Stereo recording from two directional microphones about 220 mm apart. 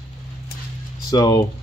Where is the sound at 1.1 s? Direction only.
15° left (ahead or behind).